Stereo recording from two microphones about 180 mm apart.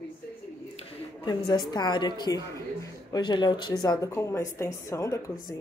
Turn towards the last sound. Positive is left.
turn(degrees=20)  # may be behind; listen again after turning